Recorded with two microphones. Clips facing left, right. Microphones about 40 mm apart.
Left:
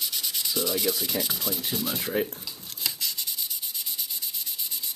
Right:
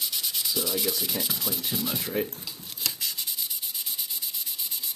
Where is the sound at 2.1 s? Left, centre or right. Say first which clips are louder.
Left 3 dB; left.